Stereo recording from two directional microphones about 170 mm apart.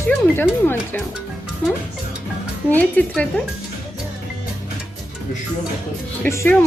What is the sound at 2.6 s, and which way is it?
Speech, 10° left (ahead or behind).